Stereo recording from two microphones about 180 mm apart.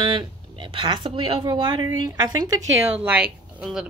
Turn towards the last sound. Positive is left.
turn(degrees=0)  # may be behind; listen again after turning